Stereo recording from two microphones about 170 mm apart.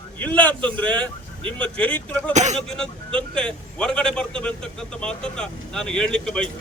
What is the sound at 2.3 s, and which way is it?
Speech, 40° right (ahead or behind).